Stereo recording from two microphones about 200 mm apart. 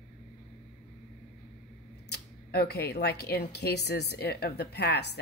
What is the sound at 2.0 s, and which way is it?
Speech, 55° left (ahead or behind).